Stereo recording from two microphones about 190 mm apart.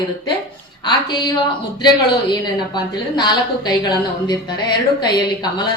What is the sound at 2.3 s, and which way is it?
Speech, 20° left (ahead or behind).